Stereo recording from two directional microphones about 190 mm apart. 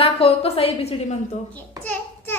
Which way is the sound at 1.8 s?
10° left (ahead or behind).